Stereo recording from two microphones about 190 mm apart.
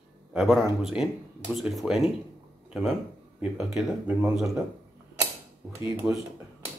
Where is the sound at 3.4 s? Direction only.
5° right (ahead or behind).